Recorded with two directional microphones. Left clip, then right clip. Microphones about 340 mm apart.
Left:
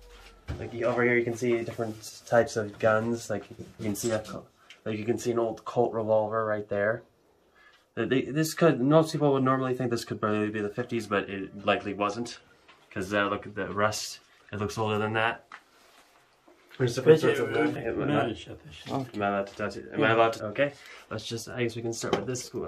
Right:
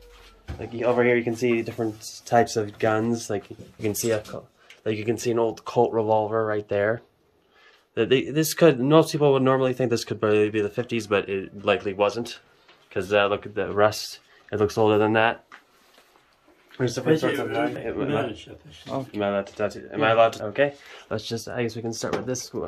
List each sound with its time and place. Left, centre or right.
0.7 s speech: right
4.8 s speech: right
7.9 s speech: right
16.7 s speech: centre
19.2 s speech: right